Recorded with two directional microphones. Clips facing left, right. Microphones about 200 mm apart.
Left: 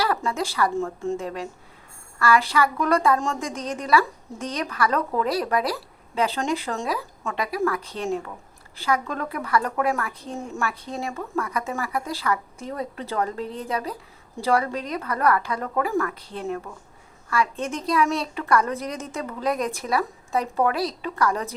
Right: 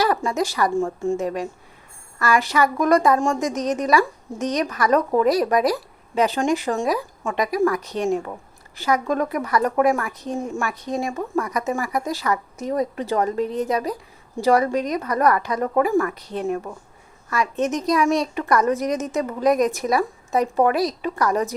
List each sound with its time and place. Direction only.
0.0 s a woman's voice: 15° right (ahead or behind)
3.6 s speech: 70° right (ahead or behind)
4.5 s speech: 15° right (ahead or behind)